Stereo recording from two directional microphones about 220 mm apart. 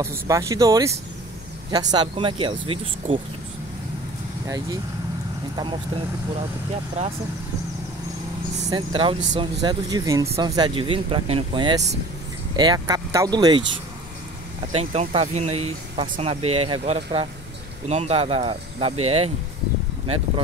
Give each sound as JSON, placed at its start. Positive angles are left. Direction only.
{"t": 0.0, "sound": "speech", "side_deg": -15}
{"t": 8.6, "sound": "speech", "side_deg": -20}
{"t": 14.7, "sound": "speech", "side_deg": -30}